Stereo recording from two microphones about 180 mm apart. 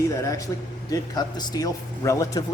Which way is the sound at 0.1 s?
20° left (ahead or behind).